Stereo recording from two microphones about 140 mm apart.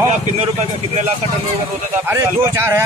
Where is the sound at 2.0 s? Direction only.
20° right (ahead or behind).